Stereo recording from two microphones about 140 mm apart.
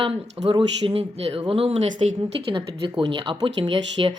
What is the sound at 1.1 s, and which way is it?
Speech, 45° right (ahead or behind).